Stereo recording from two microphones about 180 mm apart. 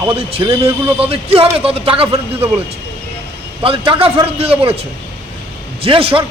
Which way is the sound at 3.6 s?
30° right (ahead or behind).